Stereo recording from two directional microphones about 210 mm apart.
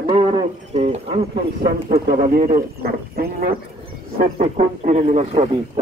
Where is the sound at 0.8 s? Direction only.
30° right (ahead or behind).